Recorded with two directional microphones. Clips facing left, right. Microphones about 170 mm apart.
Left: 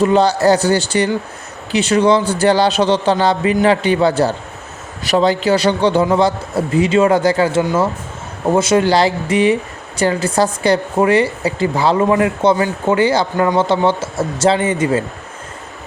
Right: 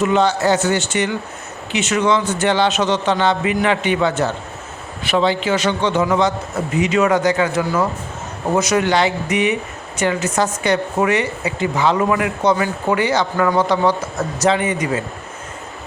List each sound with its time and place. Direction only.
0.0 s a man's voice: 35° left (ahead or behind)